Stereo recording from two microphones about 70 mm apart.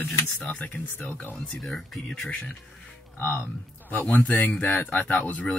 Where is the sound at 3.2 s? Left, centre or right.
Left.